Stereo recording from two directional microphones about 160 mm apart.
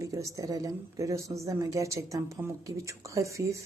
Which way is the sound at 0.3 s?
20° right (ahead or behind).